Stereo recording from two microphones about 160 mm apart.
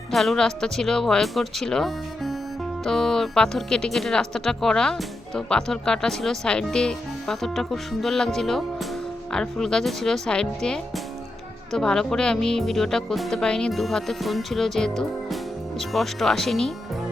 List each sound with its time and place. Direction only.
0.1 s speech: centre (ahead or behind)